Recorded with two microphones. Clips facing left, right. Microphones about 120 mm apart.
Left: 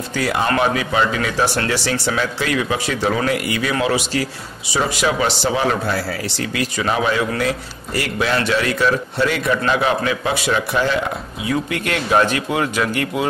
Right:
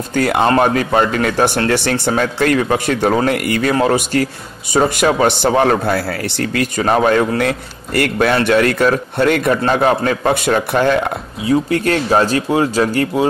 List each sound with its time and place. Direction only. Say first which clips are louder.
0.1 s speech: right 6 dB; 50° right (ahead or behind)
11.4 s speech: right 7 dB; 35° right (ahead or behind)